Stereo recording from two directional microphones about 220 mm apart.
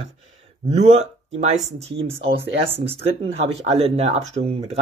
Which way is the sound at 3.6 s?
30° right (ahead or behind).